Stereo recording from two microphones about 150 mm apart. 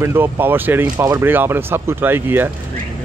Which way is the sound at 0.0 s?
15° right (ahead or behind).